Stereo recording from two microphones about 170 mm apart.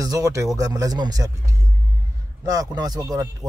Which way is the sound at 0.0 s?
20° right (ahead or behind).